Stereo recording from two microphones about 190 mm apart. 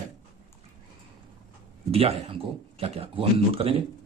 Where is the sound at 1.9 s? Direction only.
30° right (ahead or behind).